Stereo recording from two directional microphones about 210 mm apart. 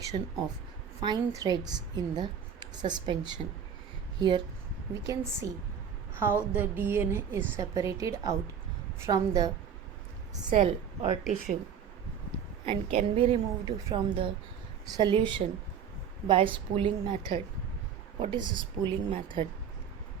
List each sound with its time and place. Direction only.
0.0 s a woman's voice: 15° right (ahead or behind)
10.6 s a woman's voice: 30° right (ahead or behind)
12.6 s a woman's voice: 25° right (ahead or behind)